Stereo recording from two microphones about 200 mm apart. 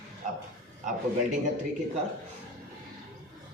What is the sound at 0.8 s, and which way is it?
Speech, 40° right (ahead or behind).